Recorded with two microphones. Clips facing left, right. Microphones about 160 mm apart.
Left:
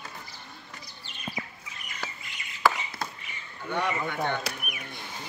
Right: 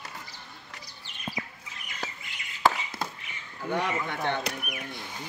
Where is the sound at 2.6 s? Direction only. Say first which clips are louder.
Even; 25° right (ahead or behind).